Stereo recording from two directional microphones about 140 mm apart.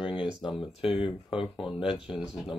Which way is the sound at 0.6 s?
45° left (ahead or behind).